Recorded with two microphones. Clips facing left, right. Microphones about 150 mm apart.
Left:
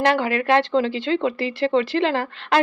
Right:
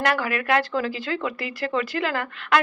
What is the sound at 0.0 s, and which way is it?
Speech, 25° left (ahead or behind).